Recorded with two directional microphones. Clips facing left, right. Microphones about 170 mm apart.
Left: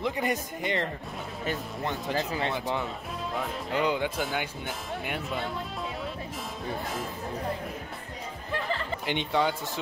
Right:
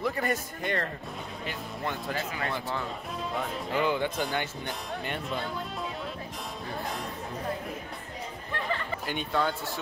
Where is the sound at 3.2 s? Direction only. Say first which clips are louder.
Even; centre (ahead or behind).